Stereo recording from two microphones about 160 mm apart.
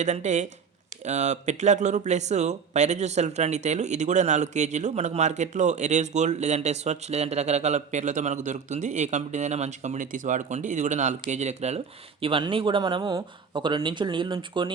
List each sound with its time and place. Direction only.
0.0 s speech: 45° right (ahead or behind)
12.2 s speech: 35° right (ahead or behind)